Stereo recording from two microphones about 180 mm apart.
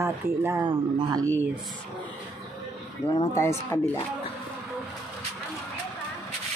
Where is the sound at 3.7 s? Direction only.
15° left (ahead or behind).